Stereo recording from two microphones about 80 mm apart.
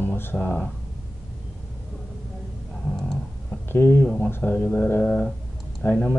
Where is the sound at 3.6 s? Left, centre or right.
Left.